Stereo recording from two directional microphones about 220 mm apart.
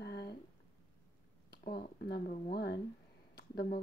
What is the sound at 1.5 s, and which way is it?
Speech, 45° left (ahead or behind).